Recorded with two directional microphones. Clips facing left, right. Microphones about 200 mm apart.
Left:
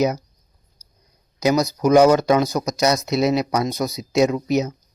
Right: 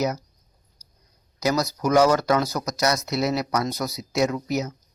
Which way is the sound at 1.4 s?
20° left (ahead or behind).